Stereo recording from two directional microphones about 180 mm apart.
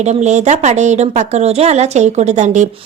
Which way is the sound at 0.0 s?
40° right (ahead or behind).